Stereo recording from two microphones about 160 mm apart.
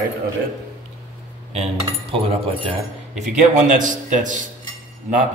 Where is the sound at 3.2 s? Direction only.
50° right (ahead or behind).